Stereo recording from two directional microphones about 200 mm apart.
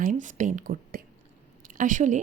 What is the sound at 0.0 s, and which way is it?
A woman's voice, 40° right (ahead or behind).